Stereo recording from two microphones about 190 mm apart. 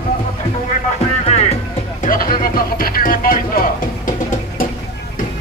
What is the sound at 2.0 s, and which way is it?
Music, 50° left (ahead or behind).